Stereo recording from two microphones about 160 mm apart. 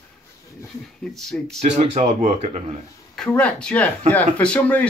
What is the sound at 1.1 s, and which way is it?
Speech, 5° left (ahead or behind).